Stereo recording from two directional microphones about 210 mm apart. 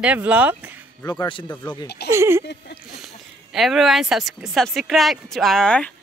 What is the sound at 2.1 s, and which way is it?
Speech, 10° right (ahead or behind).